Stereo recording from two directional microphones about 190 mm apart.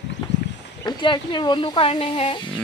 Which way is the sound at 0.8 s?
25° left (ahead or behind).